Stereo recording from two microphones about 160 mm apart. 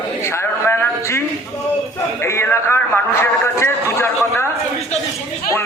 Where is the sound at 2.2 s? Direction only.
15° left (ahead or behind).